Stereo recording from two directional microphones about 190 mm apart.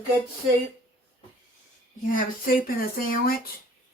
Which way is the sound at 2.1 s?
50° left (ahead or behind).